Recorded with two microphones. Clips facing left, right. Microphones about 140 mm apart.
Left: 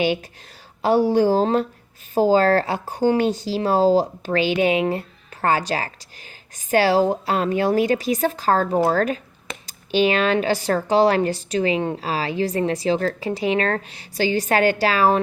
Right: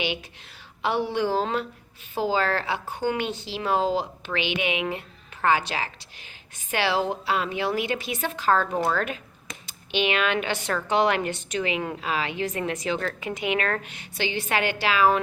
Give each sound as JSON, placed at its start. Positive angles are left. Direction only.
{"t": 0.0, "sound": "a woman's voice", "side_deg": 40}